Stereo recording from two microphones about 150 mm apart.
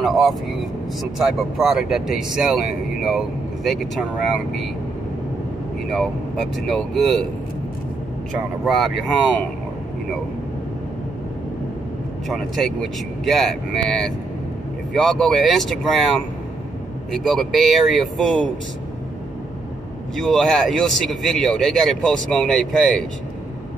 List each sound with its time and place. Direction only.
0.0 s speech: centre (ahead or behind)
3.6 s speech: centre (ahead or behind)
5.9 s speech: 5° left (ahead or behind)
8.6 s speech: centre (ahead or behind)
12.3 s speech: centre (ahead or behind)
17.1 s speech: centre (ahead or behind)
20.2 s speech: 5° left (ahead or behind)